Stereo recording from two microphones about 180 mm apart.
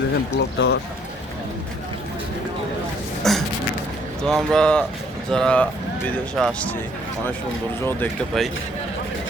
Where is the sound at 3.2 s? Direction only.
Centre (ahead or behind).